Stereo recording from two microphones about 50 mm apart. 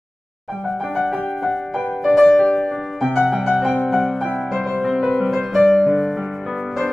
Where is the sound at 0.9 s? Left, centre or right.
Centre.